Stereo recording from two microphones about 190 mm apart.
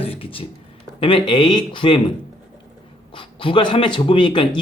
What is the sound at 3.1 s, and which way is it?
Speech, 25° left (ahead or behind).